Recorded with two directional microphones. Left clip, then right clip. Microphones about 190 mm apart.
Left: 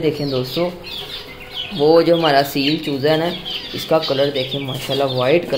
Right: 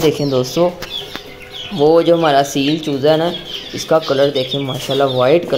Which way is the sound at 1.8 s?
10° right (ahead or behind).